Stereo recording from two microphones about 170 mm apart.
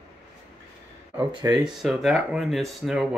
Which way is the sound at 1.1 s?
20° right (ahead or behind).